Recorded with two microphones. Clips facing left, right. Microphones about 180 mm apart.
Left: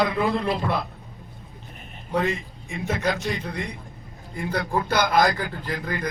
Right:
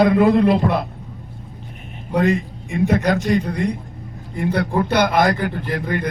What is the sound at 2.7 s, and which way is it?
Speech, 60° right (ahead or behind).